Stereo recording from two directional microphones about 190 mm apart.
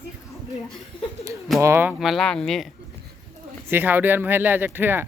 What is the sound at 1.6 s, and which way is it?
Speech, 15° right (ahead or behind).